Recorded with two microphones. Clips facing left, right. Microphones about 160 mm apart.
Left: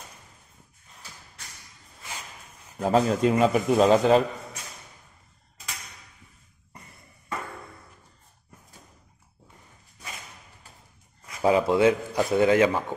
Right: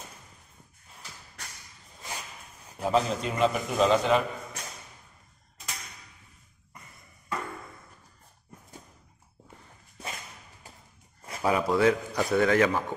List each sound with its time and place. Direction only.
2.8 s speech: 50° left (ahead or behind)
11.4 s a man's voice: 25° left (ahead or behind)